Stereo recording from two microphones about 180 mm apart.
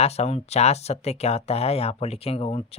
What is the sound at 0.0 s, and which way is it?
Speech, 35° left (ahead or behind).